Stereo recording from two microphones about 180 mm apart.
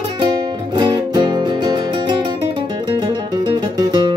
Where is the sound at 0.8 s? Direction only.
25° right (ahead or behind).